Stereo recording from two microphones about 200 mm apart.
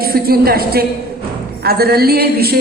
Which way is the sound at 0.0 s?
50° right (ahead or behind).